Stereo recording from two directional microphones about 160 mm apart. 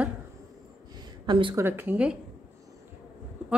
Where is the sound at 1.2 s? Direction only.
30° right (ahead or behind).